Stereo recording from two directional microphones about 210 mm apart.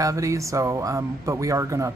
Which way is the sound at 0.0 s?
15° right (ahead or behind).